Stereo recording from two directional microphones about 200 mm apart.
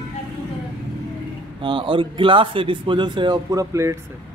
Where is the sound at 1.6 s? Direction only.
25° right (ahead or behind).